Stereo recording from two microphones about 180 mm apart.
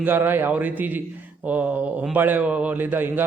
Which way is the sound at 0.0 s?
10° right (ahead or behind).